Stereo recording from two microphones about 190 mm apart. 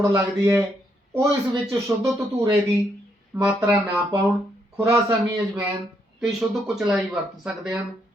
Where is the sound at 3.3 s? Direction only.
10° right (ahead or behind).